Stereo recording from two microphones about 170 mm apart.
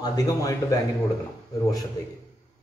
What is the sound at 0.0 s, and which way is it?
Speech, 20° left (ahead or behind).